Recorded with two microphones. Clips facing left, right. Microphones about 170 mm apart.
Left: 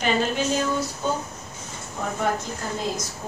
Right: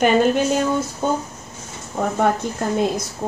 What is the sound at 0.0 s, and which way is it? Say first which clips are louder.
Speech: right 7 dB; 55° right (ahead or behind).